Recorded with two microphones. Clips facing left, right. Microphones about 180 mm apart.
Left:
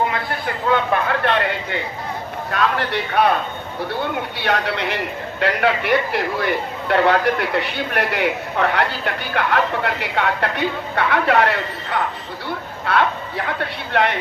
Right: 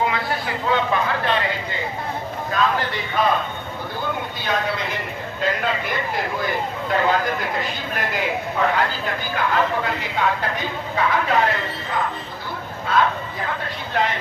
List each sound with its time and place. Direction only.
0.1 s a man's voice: 55° left (ahead or behind)
2.5 s a man's voice: 70° left (ahead or behind)
4.4 s a man's voice: 70° left (ahead or behind)